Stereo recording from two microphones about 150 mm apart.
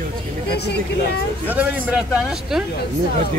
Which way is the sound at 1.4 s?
10° right (ahead or behind).